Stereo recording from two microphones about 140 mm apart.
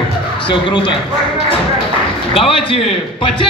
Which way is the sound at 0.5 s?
35° left (ahead or behind).